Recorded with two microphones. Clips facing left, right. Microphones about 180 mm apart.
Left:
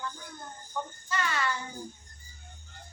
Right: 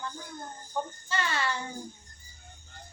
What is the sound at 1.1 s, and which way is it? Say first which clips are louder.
Child singing: left 1 dB; 30° right (ahead or behind).